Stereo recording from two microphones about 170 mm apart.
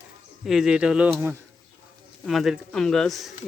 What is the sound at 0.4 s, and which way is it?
Speech, 5° right (ahead or behind).